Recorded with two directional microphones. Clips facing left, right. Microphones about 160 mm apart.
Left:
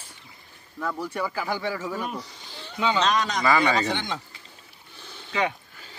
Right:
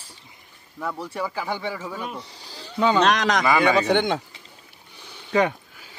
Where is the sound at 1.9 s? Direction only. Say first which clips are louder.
Left 2 dB; 5° left (ahead or behind).